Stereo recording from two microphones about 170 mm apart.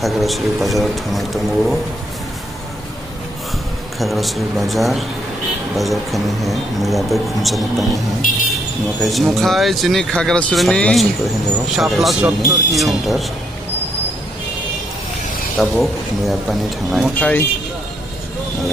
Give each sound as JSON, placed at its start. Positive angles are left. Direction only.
{"t": 0.0, "sound": "speech", "side_deg": 0}
{"t": 4.0, "sound": "speech", "side_deg": 0}
{"t": 8.2, "sound": "vehicle", "side_deg": 50}
{"t": 9.0, "sound": "speech", "side_deg": 0}
{"t": 15.6, "sound": "speech", "side_deg": 0}